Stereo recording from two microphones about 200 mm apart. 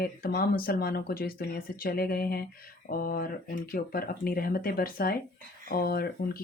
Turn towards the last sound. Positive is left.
turn(degrees=50)  # may be behind; listen again after turning